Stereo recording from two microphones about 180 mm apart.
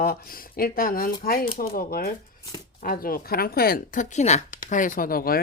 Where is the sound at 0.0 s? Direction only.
55° left (ahead or behind).